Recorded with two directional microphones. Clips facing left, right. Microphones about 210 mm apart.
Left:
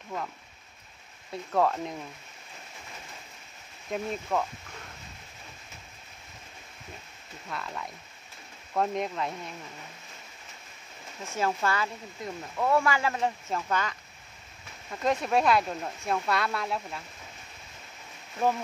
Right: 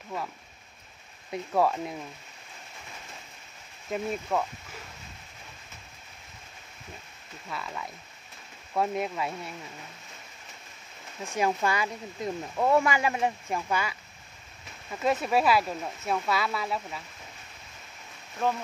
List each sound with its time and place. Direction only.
1.3 s speech: 10° right (ahead or behind)
3.9 s speech: 5° right (ahead or behind)
7.4 s speech: centre (ahead or behind)
11.2 s speech: 15° right (ahead or behind)